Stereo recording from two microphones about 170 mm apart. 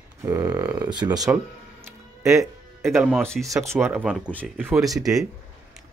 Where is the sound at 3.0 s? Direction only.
5° right (ahead or behind).